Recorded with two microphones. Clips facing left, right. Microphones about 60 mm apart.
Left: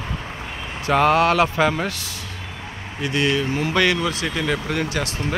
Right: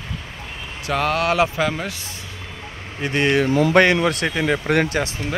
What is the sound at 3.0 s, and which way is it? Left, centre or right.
Speech, right.